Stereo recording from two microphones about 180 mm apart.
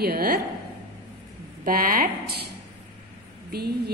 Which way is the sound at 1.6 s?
50° right (ahead or behind).